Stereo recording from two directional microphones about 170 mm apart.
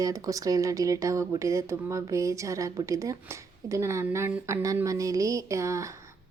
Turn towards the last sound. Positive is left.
turn(degrees=-20)  # may be behind; listen again after turning